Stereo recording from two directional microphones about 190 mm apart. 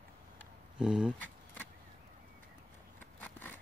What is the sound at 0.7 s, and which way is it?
Speech, 5° right (ahead or behind).